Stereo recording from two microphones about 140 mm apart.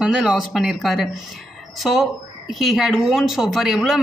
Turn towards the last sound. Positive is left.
turn(degrees=0)  # may be behind; listen again after turning